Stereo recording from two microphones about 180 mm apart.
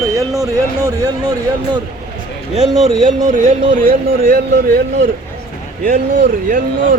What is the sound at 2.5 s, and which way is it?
Speech, 40° right (ahead or behind).